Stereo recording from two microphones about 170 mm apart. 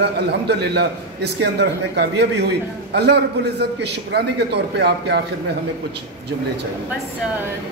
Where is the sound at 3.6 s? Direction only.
75° right (ahead or behind).